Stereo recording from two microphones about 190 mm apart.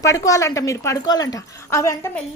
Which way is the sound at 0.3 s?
15° left (ahead or behind).